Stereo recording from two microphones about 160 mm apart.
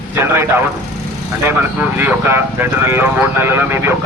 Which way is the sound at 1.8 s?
15° right (ahead or behind).